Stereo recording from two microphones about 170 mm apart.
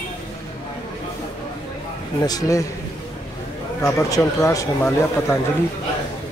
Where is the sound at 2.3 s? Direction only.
20° left (ahead or behind).